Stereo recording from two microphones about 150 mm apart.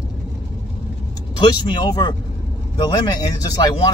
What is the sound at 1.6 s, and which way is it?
Speech, 30° left (ahead or behind).